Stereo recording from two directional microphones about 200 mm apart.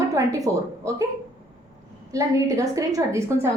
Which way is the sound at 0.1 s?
15° right (ahead or behind).